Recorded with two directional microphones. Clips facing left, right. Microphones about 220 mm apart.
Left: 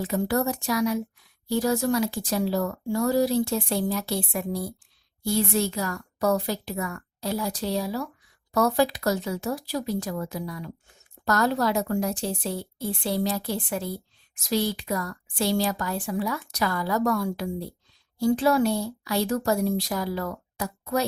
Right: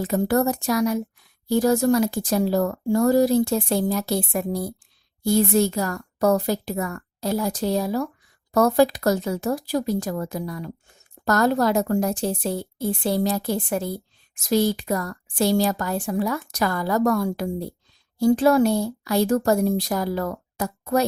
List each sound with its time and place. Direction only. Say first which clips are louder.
0.0 s speech: right 4 dB; 45° right (ahead or behind)